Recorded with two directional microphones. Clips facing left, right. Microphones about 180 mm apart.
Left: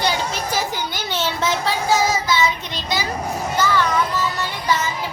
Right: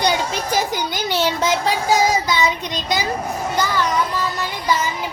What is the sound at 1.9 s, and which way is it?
Child singing, 15° right (ahead or behind).